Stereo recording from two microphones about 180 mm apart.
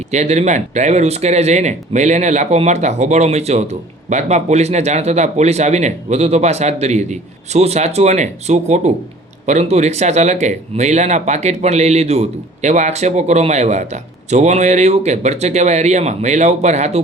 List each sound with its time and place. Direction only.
0.1 s speech: 40° right (ahead or behind)